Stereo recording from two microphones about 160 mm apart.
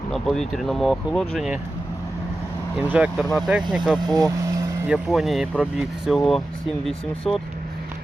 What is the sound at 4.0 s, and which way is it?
Vehicle, 25° right (ahead or behind).